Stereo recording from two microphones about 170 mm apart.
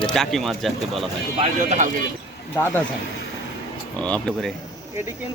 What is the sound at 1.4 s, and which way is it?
Speech, 45° right (ahead or behind).